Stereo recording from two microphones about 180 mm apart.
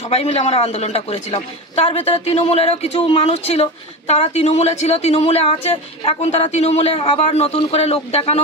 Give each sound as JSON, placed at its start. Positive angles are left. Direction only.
{"t": 0.0, "sound": "a man's voice", "side_deg": 35}